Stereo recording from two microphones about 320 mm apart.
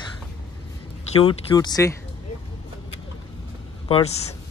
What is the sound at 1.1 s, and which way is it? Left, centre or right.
Speech, centre.